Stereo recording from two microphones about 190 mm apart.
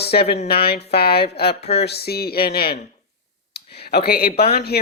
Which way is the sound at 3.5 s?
55° left (ahead or behind).